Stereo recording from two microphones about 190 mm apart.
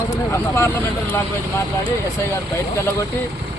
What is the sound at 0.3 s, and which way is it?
Speech, 15° left (ahead or behind).